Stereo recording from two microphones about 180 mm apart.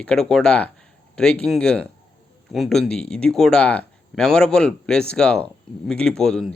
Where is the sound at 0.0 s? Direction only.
5° left (ahead or behind).